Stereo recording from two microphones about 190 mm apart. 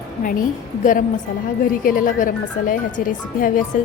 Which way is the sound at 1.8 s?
45° left (ahead or behind).